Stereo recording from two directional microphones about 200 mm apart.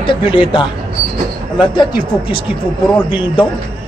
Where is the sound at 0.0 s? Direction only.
25° left (ahead or behind).